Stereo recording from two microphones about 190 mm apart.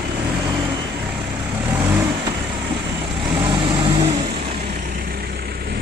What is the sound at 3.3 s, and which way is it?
Vehicle, 25° right (ahead or behind).